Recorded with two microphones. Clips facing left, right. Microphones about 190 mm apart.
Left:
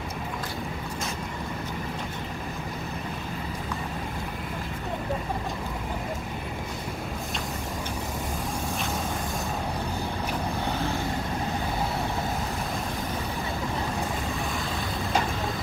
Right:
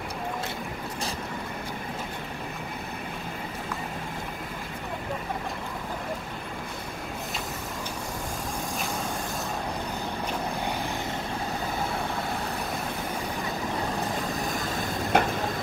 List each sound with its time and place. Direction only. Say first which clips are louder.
15.1 s vehicle: right 4 dB; 60° right (ahead or behind)